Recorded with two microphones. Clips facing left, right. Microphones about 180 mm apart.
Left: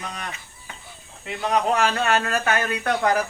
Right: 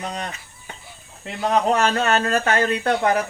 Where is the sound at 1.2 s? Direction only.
40° right (ahead or behind).